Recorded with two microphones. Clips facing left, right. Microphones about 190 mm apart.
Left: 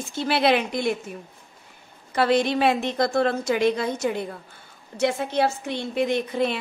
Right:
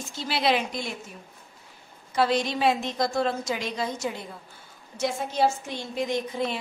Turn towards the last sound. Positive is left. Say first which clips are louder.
# left 4 dB
turn(degrees=65)  # may be behind; listen again after turning